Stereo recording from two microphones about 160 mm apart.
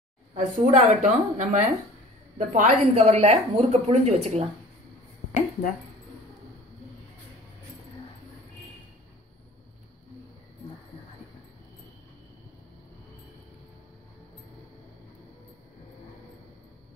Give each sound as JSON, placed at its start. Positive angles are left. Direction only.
{"t": 0.3, "sound": "a woman's voice", "side_deg": -50}